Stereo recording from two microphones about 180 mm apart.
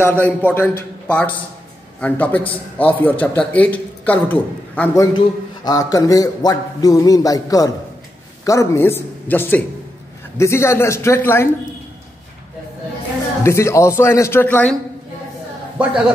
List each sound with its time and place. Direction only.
0.0 s a man's voice: 10° left (ahead or behind)
5.1 s a man's voice: 20° left (ahead or behind)
13.4 s a man's voice: 15° left (ahead or behind)